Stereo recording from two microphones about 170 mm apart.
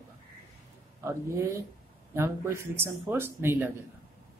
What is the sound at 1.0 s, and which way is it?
A man's voice, 15° right (ahead or behind).